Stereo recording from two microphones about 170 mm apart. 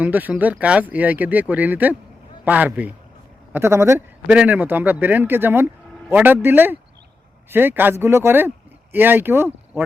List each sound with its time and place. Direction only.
0.0 s a man's voice: 10° right (ahead or behind)